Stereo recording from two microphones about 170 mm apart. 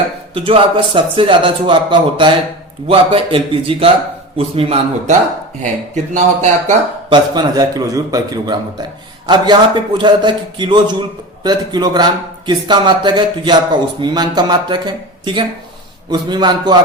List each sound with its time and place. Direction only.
0.3 s a man's voice: 30° right (ahead or behind)
7.1 s speech: 25° right (ahead or behind)